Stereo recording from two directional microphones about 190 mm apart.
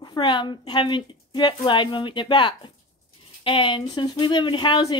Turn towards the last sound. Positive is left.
turn(degrees=25)  # may be behind; listen again after turning